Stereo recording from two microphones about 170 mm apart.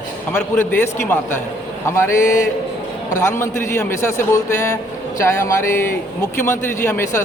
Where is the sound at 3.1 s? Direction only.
15° left (ahead or behind).